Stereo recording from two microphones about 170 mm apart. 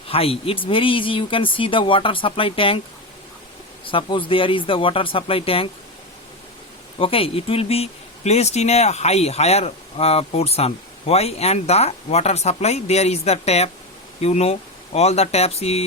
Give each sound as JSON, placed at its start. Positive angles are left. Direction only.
{"t": 0.1, "sound": "speech", "side_deg": 35}
{"t": 3.8, "sound": "speech", "side_deg": 30}
{"t": 7.0, "sound": "speech", "side_deg": 35}